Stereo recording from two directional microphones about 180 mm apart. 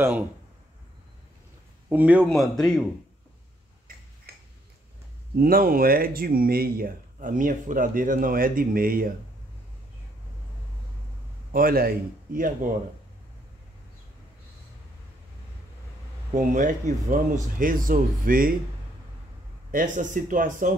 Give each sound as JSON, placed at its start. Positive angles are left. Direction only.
{"t": 1.9, "sound": "speech", "side_deg": -10}
{"t": 4.3, "sound": "a sound", "side_deg": -60}
{"t": 5.3, "sound": "speech", "side_deg": -55}
{"t": 11.5, "sound": "speech", "side_deg": -55}
{"t": 16.3, "sound": "speech", "side_deg": -45}
{"t": 19.7, "sound": "speech", "side_deg": -45}